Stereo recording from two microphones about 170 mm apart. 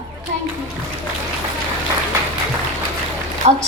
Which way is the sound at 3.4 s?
35° right (ahead or behind).